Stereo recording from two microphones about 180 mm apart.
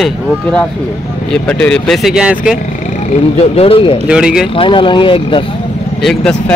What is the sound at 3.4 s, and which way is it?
Speech, 35° left (ahead or behind).